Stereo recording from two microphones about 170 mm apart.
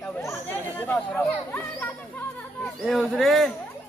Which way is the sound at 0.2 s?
15° left (ahead or behind).